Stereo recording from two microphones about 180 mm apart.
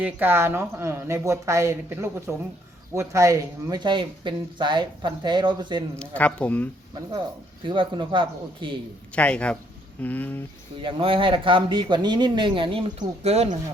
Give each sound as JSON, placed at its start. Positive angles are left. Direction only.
{"t": 0.0, "sound": "speech", "side_deg": -10}
{"t": 6.0, "sound": "speech", "side_deg": 10}
{"t": 7.7, "sound": "speech", "side_deg": -25}
{"t": 9.1, "sound": "speech", "side_deg": 5}
{"t": 10.8, "sound": "speech", "side_deg": -30}